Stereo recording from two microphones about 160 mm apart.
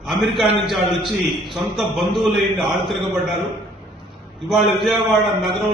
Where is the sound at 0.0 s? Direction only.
Centre (ahead or behind).